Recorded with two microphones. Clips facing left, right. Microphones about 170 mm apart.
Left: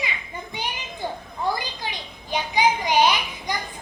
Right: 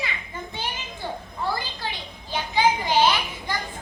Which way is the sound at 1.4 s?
15° left (ahead or behind).